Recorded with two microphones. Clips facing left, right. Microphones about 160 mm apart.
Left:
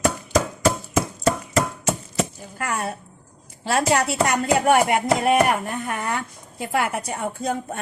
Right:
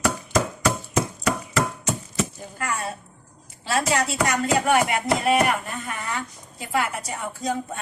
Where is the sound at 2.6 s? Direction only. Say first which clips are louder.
Left 2 dB; 55° left (ahead or behind).